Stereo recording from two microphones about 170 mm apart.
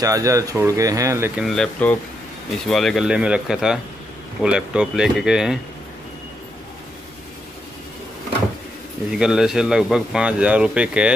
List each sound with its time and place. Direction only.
0.0 s speech: 20° right (ahead or behind)
1.4 s speech: centre (ahead or behind)
9.2 s speech: 5° right (ahead or behind)